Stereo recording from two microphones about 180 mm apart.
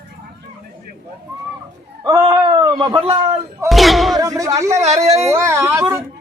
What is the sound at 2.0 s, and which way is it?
Speech, 20° right (ahead or behind).